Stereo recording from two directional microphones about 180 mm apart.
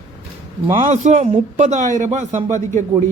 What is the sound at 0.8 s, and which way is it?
A man's voice, 40° right (ahead or behind).